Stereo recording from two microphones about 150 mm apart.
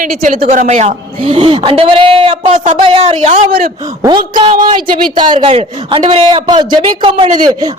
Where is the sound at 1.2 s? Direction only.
35° right (ahead or behind).